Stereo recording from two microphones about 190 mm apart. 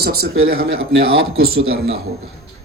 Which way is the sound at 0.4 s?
55° right (ahead or behind).